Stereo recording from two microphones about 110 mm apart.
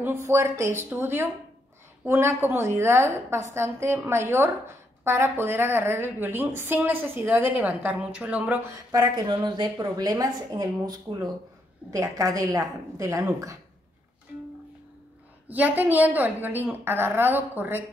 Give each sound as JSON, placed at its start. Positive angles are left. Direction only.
{"t": 0.0, "sound": "a woman's voice", "side_deg": -25}
{"t": 8.9, "sound": "a woman's voice", "side_deg": -40}
{"t": 15.4, "sound": "a woman's voice", "side_deg": -15}